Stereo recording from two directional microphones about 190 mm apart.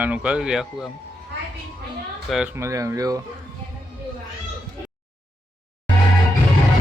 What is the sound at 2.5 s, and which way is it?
Speech, 15° right (ahead or behind).